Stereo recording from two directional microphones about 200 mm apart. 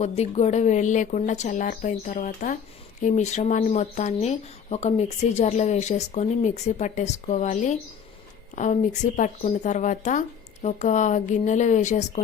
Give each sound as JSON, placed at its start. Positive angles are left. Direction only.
{"t": 0.0, "sound": "speech", "side_deg": 35}